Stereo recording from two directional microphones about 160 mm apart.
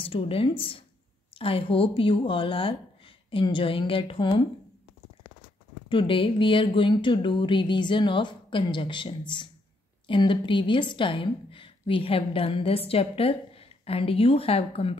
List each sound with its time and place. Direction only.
0.0 s a woman's voice: 35° left (ahead or behind)
5.9 s a woman's voice: 35° left (ahead or behind)